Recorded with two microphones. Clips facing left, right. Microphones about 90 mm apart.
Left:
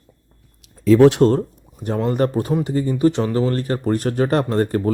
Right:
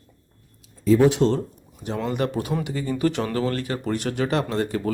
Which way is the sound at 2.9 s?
25° left (ahead or behind).